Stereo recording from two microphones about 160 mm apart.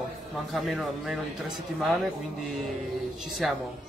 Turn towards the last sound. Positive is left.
turn(degrees=0)  # may be behind; listen again after turning